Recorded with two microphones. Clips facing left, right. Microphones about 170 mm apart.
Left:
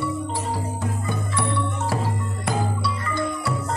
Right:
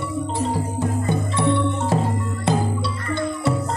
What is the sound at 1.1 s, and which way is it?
Music, 25° right (ahead or behind).